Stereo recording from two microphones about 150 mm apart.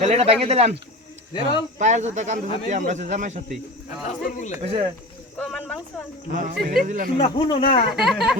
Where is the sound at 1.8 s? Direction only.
55° right (ahead or behind).